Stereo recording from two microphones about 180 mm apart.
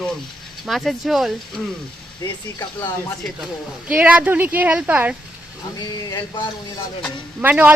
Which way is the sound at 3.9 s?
10° right (ahead or behind).